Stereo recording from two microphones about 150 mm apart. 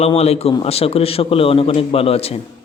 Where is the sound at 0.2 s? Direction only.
45° left (ahead or behind).